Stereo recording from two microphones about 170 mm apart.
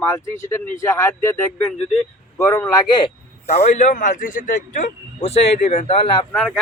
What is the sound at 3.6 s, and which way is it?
A man's voice, 45° left (ahead or behind).